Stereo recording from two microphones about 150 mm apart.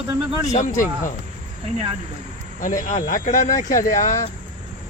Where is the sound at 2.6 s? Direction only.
60° left (ahead or behind).